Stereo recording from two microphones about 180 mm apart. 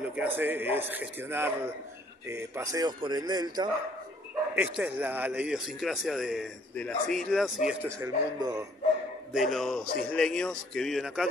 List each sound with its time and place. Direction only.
0.0 s a sound: 10° right (ahead or behind)
0.4 s a man's voice: 10° right (ahead or behind)
4.6 s a man's voice: 10° right (ahead or behind)
8.0 s a man's voice: 20° right (ahead or behind)
9.3 s a man's voice: centre (ahead or behind)